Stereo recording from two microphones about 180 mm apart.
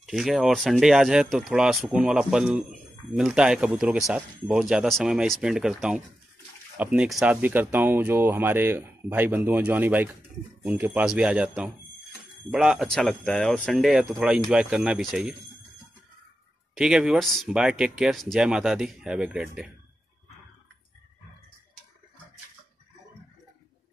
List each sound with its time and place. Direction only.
0.0 s speech: centre (ahead or behind)
16.7 s speech: 5° right (ahead or behind)